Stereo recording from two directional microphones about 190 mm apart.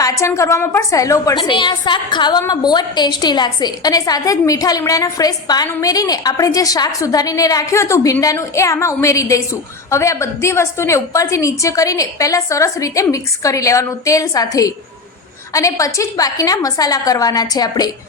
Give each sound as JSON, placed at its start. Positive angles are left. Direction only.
{"t": 0.0, "sound": "a woman's voice", "side_deg": 15}